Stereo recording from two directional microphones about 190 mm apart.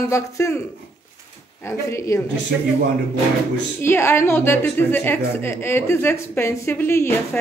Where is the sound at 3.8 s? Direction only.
15° left (ahead or behind).